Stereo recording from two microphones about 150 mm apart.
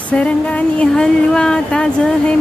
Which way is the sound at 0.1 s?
10° left (ahead or behind).